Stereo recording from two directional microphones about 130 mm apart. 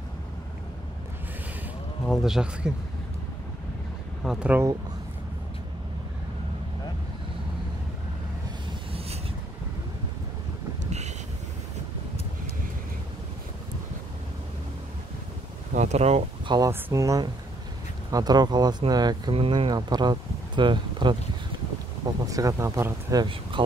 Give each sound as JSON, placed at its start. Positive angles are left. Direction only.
{"t": 2.0, "sound": "speech", "side_deg": -5}
{"t": 4.2, "sound": "speech", "side_deg": -5}
{"t": 15.7, "sound": "a sound", "side_deg": -60}
{"t": 16.4, "sound": "speech", "side_deg": -30}
{"t": 19.3, "sound": "speech", "side_deg": -45}
{"t": 22.2, "sound": "speech", "side_deg": -25}